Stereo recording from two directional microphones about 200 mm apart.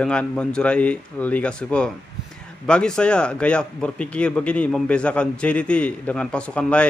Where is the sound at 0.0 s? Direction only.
5° left (ahead or behind).